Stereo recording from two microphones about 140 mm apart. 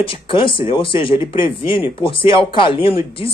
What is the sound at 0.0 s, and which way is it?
Speech, 40° left (ahead or behind).